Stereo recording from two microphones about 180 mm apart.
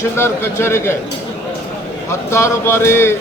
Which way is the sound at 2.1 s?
15° left (ahead or behind).